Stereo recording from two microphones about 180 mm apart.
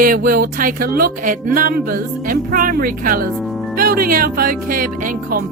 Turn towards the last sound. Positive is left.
turn(degrees=-50)  # may be behind; listen again after turning